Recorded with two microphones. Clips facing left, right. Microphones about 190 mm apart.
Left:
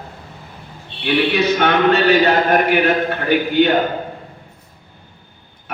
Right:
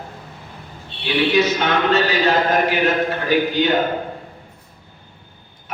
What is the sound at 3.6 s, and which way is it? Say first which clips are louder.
Speech: left 8 dB; 60° left (ahead or behind).